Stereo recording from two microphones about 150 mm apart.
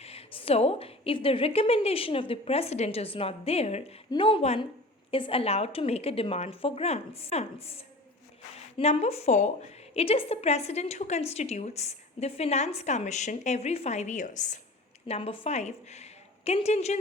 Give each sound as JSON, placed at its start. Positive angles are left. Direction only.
{"t": 0.0, "sound": "a woman's voice", "side_deg": 40}
{"t": 15.0, "sound": "a woman's voice", "side_deg": 40}